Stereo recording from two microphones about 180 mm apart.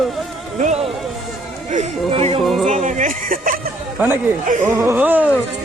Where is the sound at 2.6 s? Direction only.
45° right (ahead or behind).